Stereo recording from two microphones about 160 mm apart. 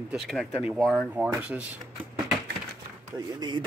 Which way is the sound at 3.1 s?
25° right (ahead or behind).